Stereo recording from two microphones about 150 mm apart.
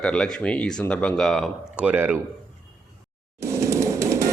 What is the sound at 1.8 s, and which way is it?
Speech, 10° right (ahead or behind).